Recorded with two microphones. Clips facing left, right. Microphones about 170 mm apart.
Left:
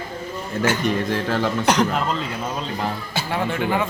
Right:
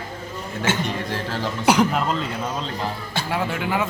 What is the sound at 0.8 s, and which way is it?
Speech, 55° left (ahead or behind).